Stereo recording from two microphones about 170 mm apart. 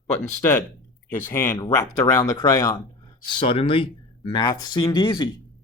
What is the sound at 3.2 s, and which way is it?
Speech, 30° left (ahead or behind).